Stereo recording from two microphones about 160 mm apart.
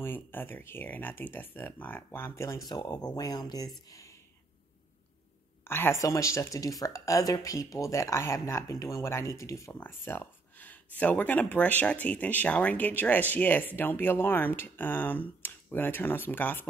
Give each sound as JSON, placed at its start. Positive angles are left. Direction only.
{"t": 0.0, "sound": "speech", "side_deg": 10}
{"t": 3.9, "sound": "a sound", "side_deg": 20}
{"t": 5.6, "sound": "speech", "side_deg": 15}